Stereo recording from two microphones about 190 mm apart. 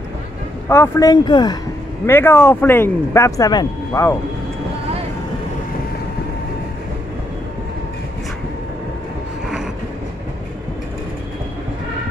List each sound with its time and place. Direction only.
0.7 s speech: 15° left (ahead or behind)